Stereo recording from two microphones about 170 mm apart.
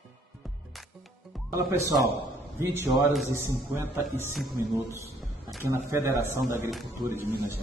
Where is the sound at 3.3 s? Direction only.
15° right (ahead or behind).